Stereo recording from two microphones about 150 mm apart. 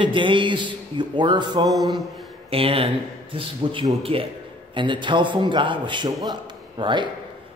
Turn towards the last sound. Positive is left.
turn(degrees=-30)  # may be behind; listen again after turning